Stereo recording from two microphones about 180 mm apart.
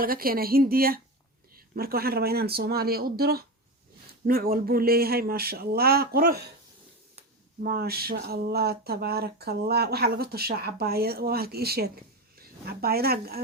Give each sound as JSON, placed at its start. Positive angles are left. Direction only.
{"t": 0.0, "sound": "speech", "side_deg": -55}
{"t": 7.6, "sound": "speech", "side_deg": -55}